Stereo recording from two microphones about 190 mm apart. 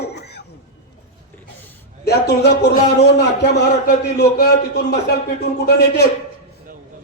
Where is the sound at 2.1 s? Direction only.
65° left (ahead or behind).